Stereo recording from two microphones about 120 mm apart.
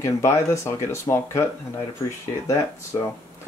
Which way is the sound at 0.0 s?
25° left (ahead or behind).